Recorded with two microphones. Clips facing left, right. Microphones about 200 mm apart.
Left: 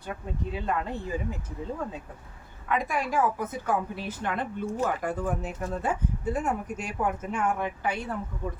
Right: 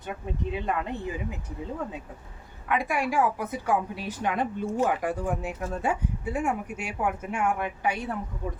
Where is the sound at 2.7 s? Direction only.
10° right (ahead or behind).